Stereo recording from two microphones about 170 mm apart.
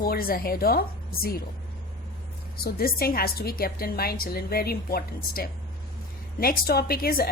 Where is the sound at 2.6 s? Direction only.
60° left (ahead or behind).